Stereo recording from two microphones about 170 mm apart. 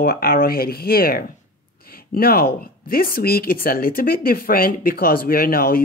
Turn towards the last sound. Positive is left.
turn(degrees=60)  # may be behind; listen again after turning